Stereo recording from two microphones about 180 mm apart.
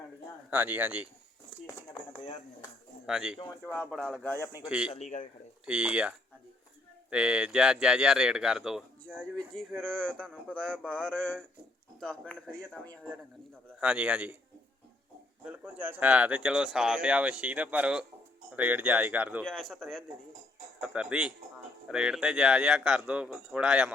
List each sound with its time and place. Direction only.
0.5 s speech: 10° right (ahead or behind)
3.1 s a man's voice: 5° right (ahead or behind); by 4.7 s 15° left (ahead or behind)
4.9 s a man's voice: 40° left (ahead or behind)
5.6 s a man's voice: 5° right (ahead or behind)
15.4 s speech: 5° right (ahead or behind)
19.5 s a man's voice: centre (ahead or behind)